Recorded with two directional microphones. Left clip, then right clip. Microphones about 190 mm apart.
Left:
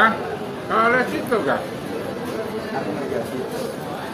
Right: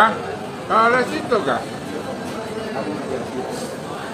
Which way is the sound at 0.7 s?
55° right (ahead or behind).